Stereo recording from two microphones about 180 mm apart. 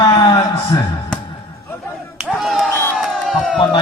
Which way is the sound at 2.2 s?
Centre (ahead or behind).